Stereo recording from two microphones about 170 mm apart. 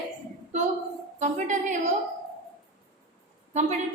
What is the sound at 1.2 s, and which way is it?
Speech, 45° right (ahead or behind).